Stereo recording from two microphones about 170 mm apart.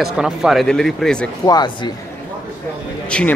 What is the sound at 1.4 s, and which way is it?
Speech, 25° left (ahead or behind).